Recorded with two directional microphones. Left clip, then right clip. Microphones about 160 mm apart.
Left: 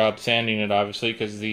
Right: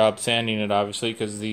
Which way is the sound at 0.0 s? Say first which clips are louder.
Right 1 dB; 15° right (ahead or behind).